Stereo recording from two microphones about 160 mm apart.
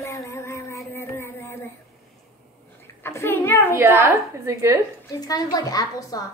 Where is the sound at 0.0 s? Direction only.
20° left (ahead or behind).